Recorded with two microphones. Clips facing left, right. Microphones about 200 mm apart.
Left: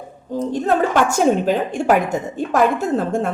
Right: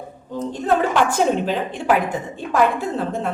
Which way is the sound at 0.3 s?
45° left (ahead or behind).